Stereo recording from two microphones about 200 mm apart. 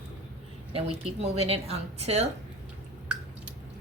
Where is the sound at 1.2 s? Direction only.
30° right (ahead or behind).